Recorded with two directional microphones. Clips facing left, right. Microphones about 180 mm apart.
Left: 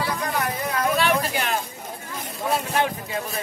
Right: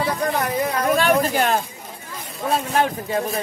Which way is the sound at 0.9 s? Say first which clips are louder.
Right 4 dB; 45° right (ahead or behind).